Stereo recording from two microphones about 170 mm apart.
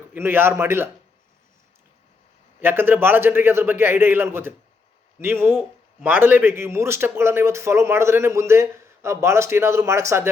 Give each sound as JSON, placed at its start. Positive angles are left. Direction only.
{"t": 0.1, "sound": "speech", "side_deg": -15}
{"t": 2.6, "sound": "speech", "side_deg": -10}